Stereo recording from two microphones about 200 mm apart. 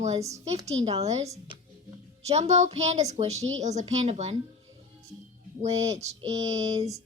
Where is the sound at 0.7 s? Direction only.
30° right (ahead or behind).